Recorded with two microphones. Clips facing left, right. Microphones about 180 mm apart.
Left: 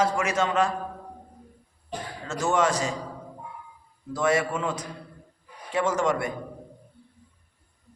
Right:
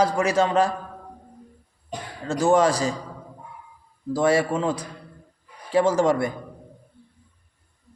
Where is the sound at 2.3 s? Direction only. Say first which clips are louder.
Right 5 dB; 35° right (ahead or behind).